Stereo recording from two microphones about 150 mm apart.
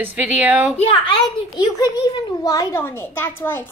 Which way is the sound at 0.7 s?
40° left (ahead or behind).